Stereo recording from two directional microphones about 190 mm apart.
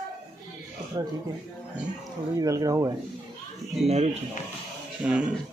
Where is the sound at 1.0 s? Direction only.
20° right (ahead or behind).